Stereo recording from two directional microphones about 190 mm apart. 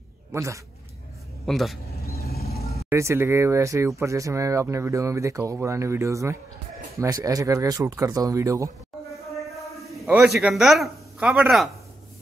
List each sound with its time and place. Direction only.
0.3 s speech: 15° right (ahead or behind)
1.4 s speech: centre (ahead or behind)
2.9 s speech: 15° right (ahead or behind)
9.8 s a sound: centre (ahead or behind)
10.0 s speech: 5° right (ahead or behind)